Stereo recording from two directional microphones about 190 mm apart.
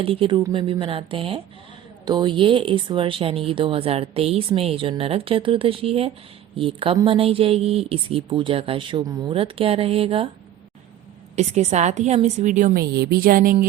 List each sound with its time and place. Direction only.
0.0 s speech: 30° right (ahead or behind)
11.3 s a woman's voice: 35° right (ahead or behind)